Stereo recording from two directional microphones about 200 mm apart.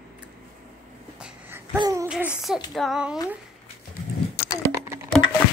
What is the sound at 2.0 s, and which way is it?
A woman's voice, 5° right (ahead or behind).